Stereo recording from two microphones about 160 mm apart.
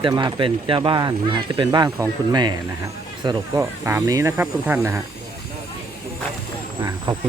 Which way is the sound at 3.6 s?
15° right (ahead or behind).